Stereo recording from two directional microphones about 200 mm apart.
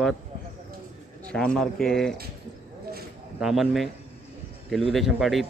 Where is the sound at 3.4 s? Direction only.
Centre (ahead or behind).